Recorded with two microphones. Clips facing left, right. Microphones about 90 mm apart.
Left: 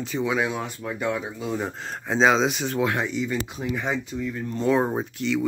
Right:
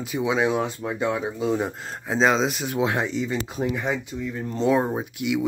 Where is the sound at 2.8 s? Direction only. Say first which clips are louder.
Right 2 dB; 25° right (ahead or behind).